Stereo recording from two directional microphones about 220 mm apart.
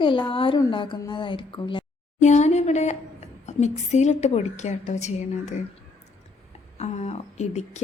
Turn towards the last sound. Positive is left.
turn(degrees=30)  # may be behind; listen again after turning